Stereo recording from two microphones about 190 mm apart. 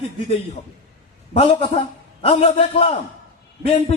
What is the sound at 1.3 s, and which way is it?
A man's voice, 25° left (ahead or behind).